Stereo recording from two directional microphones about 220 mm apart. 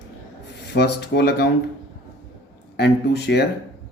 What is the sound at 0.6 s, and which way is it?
Speech, 50° left (ahead or behind).